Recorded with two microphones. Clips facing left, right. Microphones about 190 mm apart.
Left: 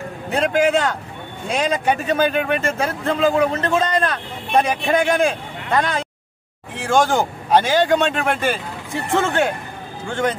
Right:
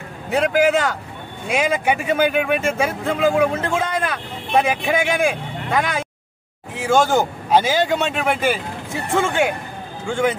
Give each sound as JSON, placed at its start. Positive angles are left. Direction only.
{"t": 0.3, "sound": "a man's voice", "side_deg": -5}